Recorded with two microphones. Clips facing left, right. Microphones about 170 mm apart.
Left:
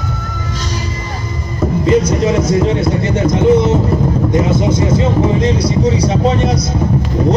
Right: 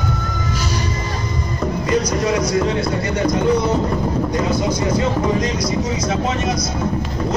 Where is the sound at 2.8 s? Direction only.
20° left (ahead or behind).